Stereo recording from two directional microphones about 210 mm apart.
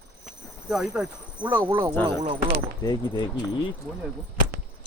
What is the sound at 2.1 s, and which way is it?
Speech, 25° right (ahead or behind).